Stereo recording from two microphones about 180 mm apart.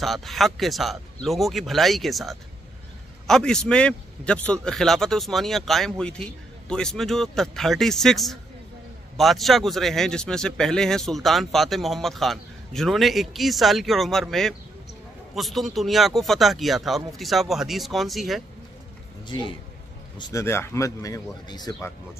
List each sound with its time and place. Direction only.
0.0 s a man's voice: centre (ahead or behind)
19.2 s a man's voice: 25° left (ahead or behind)